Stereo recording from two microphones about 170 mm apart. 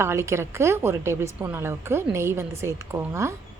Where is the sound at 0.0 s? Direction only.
15° right (ahead or behind).